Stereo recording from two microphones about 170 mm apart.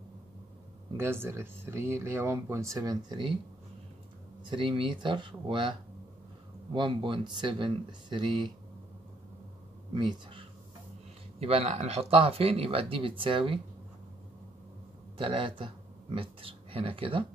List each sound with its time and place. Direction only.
0.9 s speech: 15° right (ahead or behind)
4.5 s speech: 30° right (ahead or behind)
9.9 s speech: 30° right (ahead or behind)
15.1 s speech: 30° right (ahead or behind)